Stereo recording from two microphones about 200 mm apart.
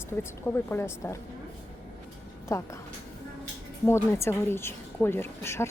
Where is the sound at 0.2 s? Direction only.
10° left (ahead or behind).